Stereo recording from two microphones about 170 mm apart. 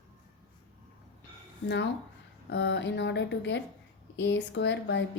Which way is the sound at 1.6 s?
90° left.